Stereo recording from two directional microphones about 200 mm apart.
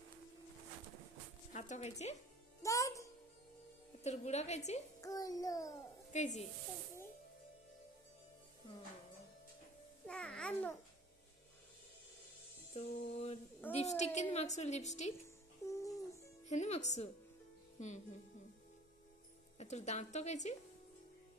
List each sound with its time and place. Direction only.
1.5 s speech: 35° left (ahead or behind)
2.6 s music: 15° left (ahead or behind)
4.0 s a woman's voice: 35° left (ahead or behind)
5.0 s a child's voice: 15° left (ahead or behind)
6.1 s a woman's voice: 35° left (ahead or behind)
10.0 s babbling: 5° left (ahead or behind)
12.7 s music: 30° left (ahead or behind)
13.7 s a woman's voice: 35° left (ahead or behind)
15.6 s music: 15° left (ahead or behind)
16.4 s a woman's voice: 35° left (ahead or behind)
19.6 s a woman's voice: 35° left (ahead or behind)